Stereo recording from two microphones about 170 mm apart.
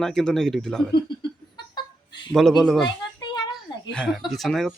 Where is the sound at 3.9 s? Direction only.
5° left (ahead or behind).